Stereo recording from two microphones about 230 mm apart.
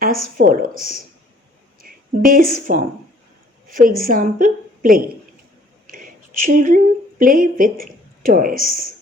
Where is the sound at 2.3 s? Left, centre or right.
Right.